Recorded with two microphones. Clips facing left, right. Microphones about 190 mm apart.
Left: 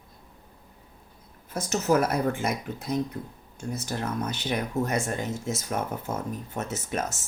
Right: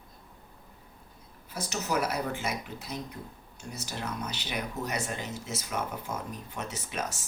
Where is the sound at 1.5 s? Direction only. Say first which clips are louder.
Left 8 dB; 50° left (ahead or behind).